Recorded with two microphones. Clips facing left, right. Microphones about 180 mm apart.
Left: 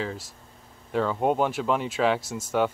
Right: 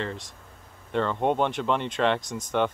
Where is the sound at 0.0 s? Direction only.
5° left (ahead or behind).